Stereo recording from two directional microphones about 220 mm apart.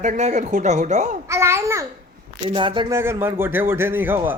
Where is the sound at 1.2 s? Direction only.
10° right (ahead or behind).